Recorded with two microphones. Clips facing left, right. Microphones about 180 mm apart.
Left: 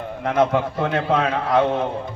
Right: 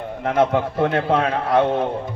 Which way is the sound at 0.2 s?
30° right (ahead or behind).